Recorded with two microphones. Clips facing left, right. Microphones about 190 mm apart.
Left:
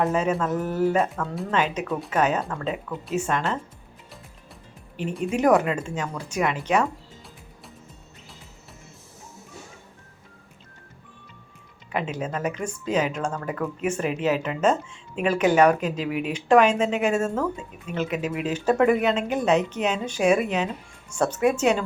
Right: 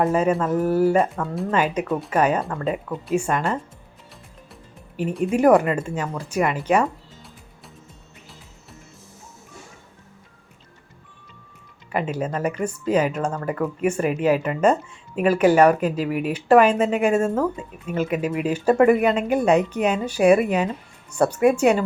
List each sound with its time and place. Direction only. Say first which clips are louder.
0.0 s speech: right 3 dB; 5° right (ahead or behind)
4.9 s speech: right 4 dB; 5° right (ahead or behind)
12.1 s speech: right 3 dB; 10° right (ahead or behind)
16.0 s speech: right 3 dB; 45° right (ahead or behind)
16.3 s speech: right 3 dB; 5° right (ahead or behind)